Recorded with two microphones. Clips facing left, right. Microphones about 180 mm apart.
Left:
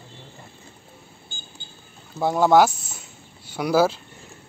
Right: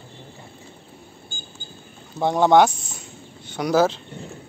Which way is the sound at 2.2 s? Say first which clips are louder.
Right 1 dB; 5° left (ahead or behind).